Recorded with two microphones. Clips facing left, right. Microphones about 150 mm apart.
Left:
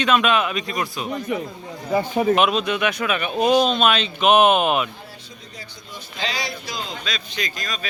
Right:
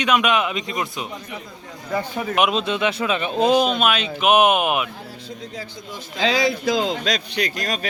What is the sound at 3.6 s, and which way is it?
Speech, 10° right (ahead or behind).